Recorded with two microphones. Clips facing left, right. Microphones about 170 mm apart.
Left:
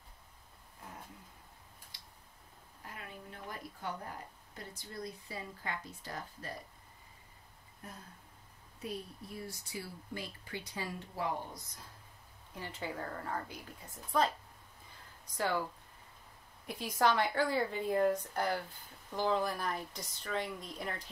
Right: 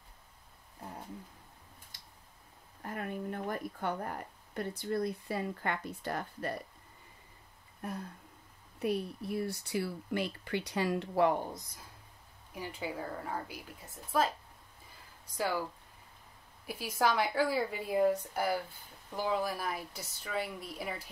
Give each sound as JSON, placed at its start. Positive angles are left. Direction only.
{"t": 1.9, "sound": "tick-tock", "side_deg": -45}
{"t": 2.8, "sound": "speech", "side_deg": -55}
{"t": 8.7, "sound": "speech", "side_deg": -70}
{"t": 12.5, "sound": "a woman's voice", "side_deg": -10}
{"t": 16.6, "sound": "a woman's voice", "side_deg": -5}